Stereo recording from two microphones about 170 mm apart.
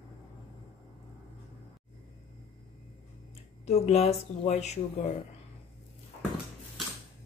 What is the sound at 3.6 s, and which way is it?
A woman's voice, 40° left (ahead or behind).